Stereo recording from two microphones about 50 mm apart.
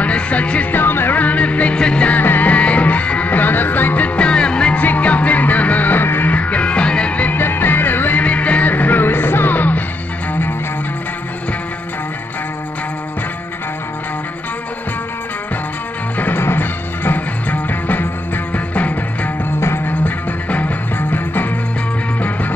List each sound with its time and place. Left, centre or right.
0.0 s music: left
0.7 s music: left
1.1 s music: left
4.3 s music: centre
4.7 s music: left
6.3 s music: left
7.3 s music: left
8.2 s music: left
16.2 s music: left